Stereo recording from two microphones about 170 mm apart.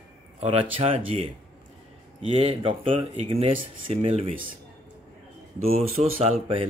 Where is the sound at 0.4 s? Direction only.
30° right (ahead or behind).